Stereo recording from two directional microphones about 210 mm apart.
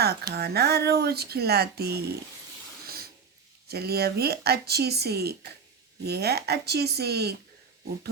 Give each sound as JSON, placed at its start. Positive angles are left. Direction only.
{"t": 0.3, "sound": "speech", "side_deg": -50}
{"t": 3.7, "sound": "speech", "side_deg": -50}